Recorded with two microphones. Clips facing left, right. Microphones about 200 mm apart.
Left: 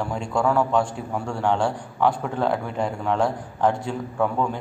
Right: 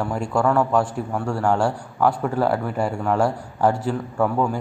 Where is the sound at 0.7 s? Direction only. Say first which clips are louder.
Right 2 dB; 5° right (ahead or behind).